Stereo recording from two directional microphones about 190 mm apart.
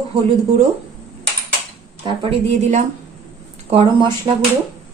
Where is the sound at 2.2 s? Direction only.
40° right (ahead or behind).